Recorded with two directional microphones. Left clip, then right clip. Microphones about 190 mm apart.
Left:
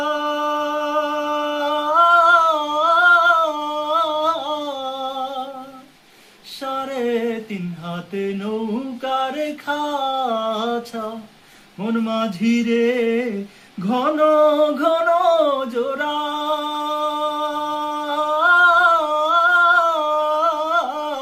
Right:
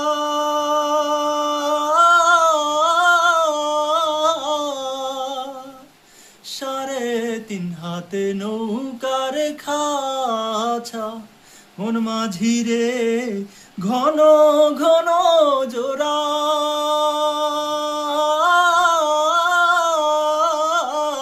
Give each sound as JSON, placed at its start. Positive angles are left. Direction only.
{"t": 0.0, "sound": "music", "side_deg": -20}
{"t": 6.7, "sound": "a sound", "side_deg": -20}
{"t": 7.9, "sound": "mantra", "side_deg": -20}
{"t": 11.8, "sound": "male singing", "side_deg": -20}
{"t": 13.8, "sound": "a sound", "side_deg": -15}
{"t": 16.8, "sound": "singing", "side_deg": -20}